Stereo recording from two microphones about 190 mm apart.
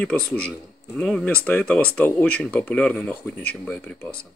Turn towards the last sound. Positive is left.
turn(degrees=5)  # may be behind; listen again after turning